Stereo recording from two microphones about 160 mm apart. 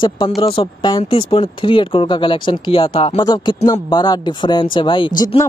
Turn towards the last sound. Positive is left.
turn(degrees=25)  # may be behind; listen again after turning